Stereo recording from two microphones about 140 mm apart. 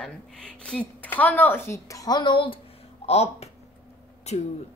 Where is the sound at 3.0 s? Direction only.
50° left (ahead or behind).